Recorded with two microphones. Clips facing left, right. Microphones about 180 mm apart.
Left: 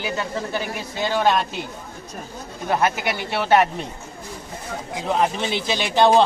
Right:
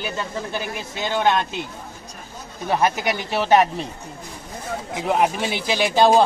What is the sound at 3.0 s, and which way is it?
Speech, 20° right (ahead or behind).